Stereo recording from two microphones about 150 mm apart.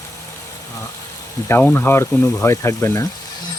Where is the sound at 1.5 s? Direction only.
15° left (ahead or behind).